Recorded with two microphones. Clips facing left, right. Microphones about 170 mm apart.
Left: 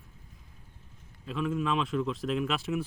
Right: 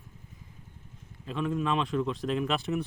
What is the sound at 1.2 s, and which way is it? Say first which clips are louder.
Speech: right 1 dB; centre (ahead or behind).